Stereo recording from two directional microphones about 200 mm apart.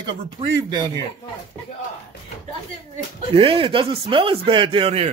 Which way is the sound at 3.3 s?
25° right (ahead or behind).